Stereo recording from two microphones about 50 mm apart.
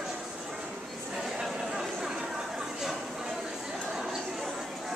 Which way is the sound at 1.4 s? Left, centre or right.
Centre.